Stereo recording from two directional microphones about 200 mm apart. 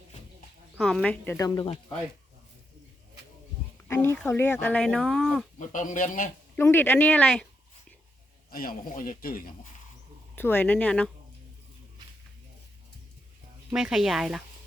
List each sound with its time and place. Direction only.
0.8 s speech: centre (ahead or behind); by 1.8 s 25° left (ahead or behind)
3.8 s speech: 15° left (ahead or behind)
5.5 s speech: 40° left (ahead or behind)
6.6 s speech: 10° left (ahead or behind)
8.4 s speech: 45° left (ahead or behind)
10.3 s speech: 10° left (ahead or behind)
13.7 s speech: centre (ahead or behind)